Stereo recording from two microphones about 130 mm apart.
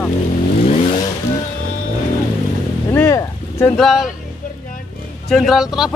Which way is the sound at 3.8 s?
Centre (ahead or behind).